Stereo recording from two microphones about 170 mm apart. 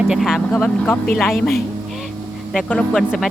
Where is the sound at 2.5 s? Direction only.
5° left (ahead or behind).